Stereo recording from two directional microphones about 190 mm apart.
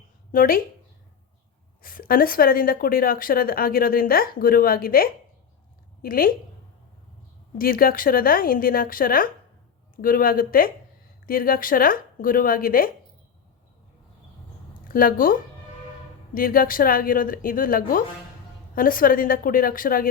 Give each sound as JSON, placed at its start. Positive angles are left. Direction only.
{"t": 0.3, "sound": "speech", "side_deg": 50}
{"t": 1.8, "sound": "a woman's voice", "side_deg": 50}
{"t": 7.6, "sound": "speech", "side_deg": 50}
{"t": 14.8, "sound": "speech", "side_deg": 50}